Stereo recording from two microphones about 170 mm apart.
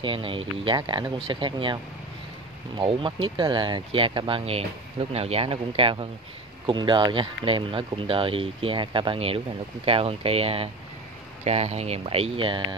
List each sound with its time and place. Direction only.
0.0 s speech: 30° right (ahead or behind)
2.8 s speech: 30° right (ahead or behind)